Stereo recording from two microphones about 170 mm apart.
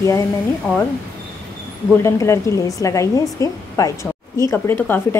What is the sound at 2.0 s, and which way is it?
A woman's voice, 15° left (ahead or behind).